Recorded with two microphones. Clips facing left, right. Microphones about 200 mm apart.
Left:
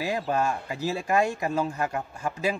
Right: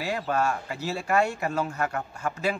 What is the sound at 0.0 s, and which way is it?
Speech, 15° left (ahead or behind).